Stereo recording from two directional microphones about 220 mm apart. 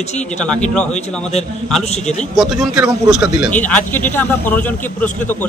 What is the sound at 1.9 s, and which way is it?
Speech, 30° left (ahead or behind).